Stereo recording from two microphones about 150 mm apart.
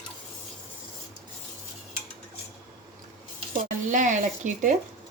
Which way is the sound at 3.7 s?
60° right (ahead or behind).